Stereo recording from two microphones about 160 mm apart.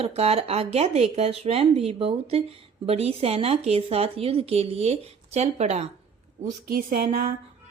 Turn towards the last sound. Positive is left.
turn(degrees=-65)  # may be behind; listen again after turning